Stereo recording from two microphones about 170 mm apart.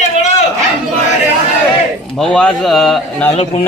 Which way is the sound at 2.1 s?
5° left (ahead or behind).